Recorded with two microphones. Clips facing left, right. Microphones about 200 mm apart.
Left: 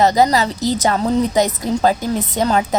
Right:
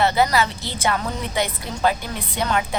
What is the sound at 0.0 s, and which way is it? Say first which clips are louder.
A woman's voice: left 5 dB; 40° left (ahead or behind).